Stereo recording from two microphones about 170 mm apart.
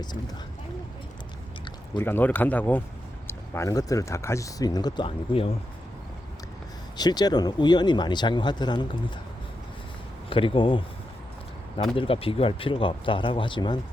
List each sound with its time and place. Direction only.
2.0 s speech: 10° left (ahead or behind); by 5.5 s 35° left (ahead or behind)
6.9 s speech: 25° left (ahead or behind)
10.2 s speech: 30° left (ahead or behind)
11.9 s speech: 35° left (ahead or behind)